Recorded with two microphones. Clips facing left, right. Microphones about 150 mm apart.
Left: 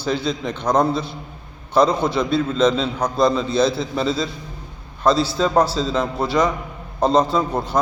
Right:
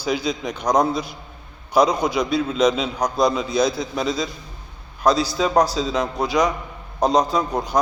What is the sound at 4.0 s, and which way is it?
A man's voice, centre (ahead or behind).